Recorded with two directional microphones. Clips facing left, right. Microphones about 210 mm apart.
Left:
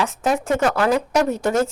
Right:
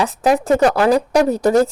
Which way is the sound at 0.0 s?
35° right (ahead or behind).